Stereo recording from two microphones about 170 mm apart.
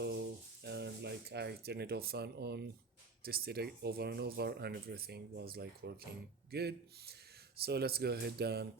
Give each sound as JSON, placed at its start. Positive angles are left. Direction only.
{"t": 0.6, "sound": "speech", "side_deg": -80}